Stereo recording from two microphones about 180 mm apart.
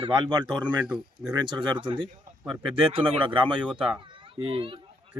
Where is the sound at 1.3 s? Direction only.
25° right (ahead or behind).